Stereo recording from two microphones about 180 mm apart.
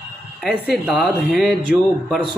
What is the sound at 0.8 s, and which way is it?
Speech, 5° right (ahead or behind).